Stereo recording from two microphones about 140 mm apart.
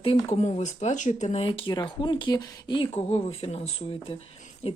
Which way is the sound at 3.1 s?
45° left (ahead or behind).